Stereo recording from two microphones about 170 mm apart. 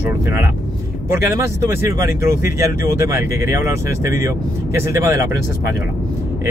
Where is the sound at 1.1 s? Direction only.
15° right (ahead or behind).